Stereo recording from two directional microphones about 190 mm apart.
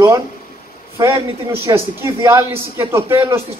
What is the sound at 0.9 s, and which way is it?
A man's voice, 15° right (ahead or behind).